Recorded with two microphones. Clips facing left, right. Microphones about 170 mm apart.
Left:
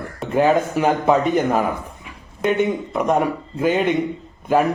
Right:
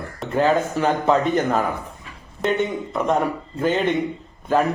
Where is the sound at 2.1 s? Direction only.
15° left (ahead or behind).